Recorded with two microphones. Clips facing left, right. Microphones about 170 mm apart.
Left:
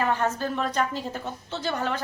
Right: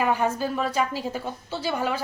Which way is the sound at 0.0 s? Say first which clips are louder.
Right 2 dB; 10° right (ahead or behind).